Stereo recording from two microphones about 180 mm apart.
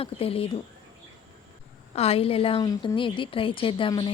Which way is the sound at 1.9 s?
35° left (ahead or behind).